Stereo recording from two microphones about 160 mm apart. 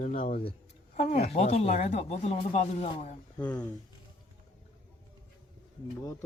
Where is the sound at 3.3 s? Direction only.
10° left (ahead or behind).